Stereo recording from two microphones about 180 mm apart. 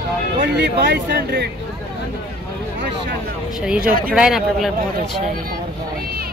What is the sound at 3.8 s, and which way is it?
Speech, 50° right (ahead or behind).